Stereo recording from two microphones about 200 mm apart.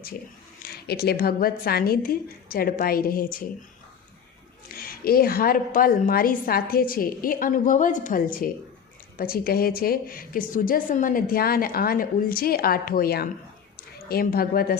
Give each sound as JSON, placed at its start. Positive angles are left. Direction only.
{"t": 0.6, "sound": "a woman's voice", "side_deg": 50}
{"t": 4.7, "sound": "a woman's voice", "side_deg": 50}